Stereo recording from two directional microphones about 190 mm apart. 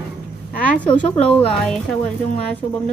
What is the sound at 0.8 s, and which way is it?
A woman's voice, 5° left (ahead or behind).